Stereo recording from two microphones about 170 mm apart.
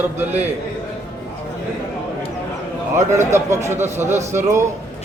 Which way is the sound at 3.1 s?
15° right (ahead or behind).